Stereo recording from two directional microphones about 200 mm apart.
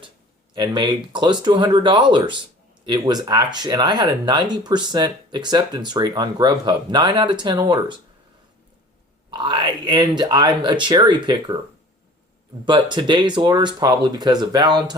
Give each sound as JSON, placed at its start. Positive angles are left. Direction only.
{"t": 0.5, "sound": "speech", "side_deg": -20}
{"t": 9.3, "sound": "speech", "side_deg": -20}
{"t": 12.6, "sound": "speech", "side_deg": -25}